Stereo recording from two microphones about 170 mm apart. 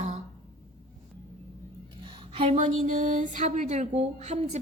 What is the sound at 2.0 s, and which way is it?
A woman's voice, 35° right (ahead or behind).